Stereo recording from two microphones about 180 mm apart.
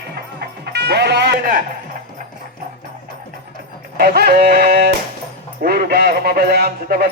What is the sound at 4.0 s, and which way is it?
Speech, 60° right (ahead or behind).